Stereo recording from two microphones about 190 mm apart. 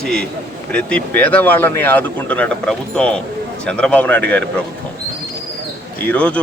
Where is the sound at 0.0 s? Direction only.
5° left (ahead or behind).